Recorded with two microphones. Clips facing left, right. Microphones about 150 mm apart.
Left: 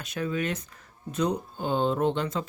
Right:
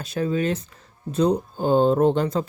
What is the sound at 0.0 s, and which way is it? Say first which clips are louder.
Speech: right 6 dB; 30° right (ahead or behind).